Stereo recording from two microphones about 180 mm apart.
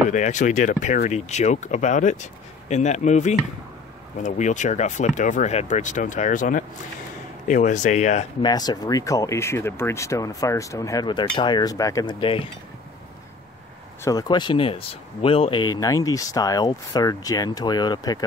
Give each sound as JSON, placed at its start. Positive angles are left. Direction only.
{"t": 0.1, "sound": "speech", "side_deg": 45}
{"t": 8.4, "sound": "speech", "side_deg": 20}
{"t": 14.0, "sound": "speech", "side_deg": 20}